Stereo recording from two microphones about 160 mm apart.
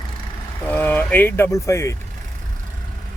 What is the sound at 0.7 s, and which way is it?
Speech, 10° left (ahead or behind).